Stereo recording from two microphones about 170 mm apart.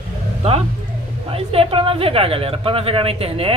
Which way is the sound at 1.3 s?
35° right (ahead or behind).